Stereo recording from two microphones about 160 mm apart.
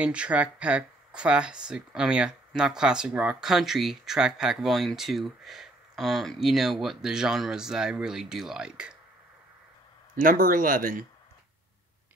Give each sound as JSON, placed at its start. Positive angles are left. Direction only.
{"t": 0.0, "sound": "speech", "side_deg": -10}
{"t": 10.1, "sound": "speech", "side_deg": -60}